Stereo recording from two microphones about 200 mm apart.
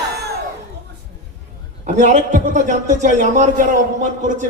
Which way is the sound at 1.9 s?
35° right (ahead or behind).